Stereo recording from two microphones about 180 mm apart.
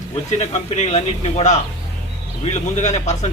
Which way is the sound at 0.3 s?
35° left (ahead or behind).